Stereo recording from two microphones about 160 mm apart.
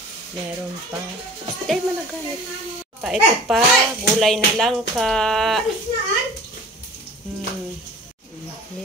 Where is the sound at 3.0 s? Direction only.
Centre (ahead or behind).